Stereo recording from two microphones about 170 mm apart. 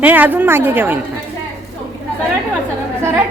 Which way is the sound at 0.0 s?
10° right (ahead or behind).